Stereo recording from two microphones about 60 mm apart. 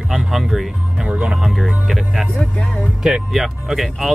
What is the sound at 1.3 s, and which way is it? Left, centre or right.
Speech, centre.